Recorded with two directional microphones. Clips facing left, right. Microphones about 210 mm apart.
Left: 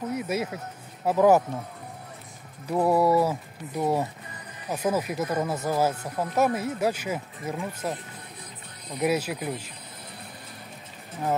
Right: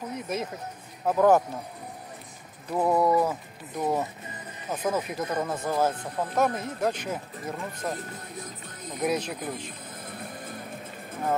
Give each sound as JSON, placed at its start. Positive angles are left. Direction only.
{"t": 0.2, "sound": "speech", "side_deg": 5}
{"t": 2.7, "sound": "speech", "side_deg": 5}
{"t": 9.0, "sound": "speech", "side_deg": 5}
{"t": 10.0, "sound": "music", "side_deg": -50}